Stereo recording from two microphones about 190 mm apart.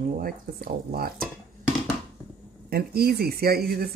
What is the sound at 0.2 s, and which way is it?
Speech, 50° right (ahead or behind).